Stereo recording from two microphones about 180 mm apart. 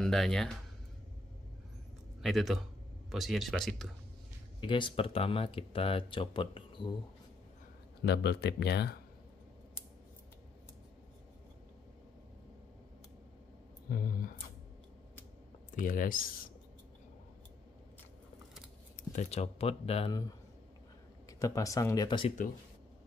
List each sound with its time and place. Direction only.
0.0 s speech: 5° left (ahead or behind)
2.2 s speech: centre (ahead or behind)
4.6 s speech: 25° left (ahead or behind)
8.0 s speech: 70° left (ahead or behind)
13.8 s speech: 50° left (ahead or behind)
15.7 s speech: 50° left (ahead or behind)
19.1 s speech: 35° left (ahead or behind)
21.3 s speech: 20° left (ahead or behind)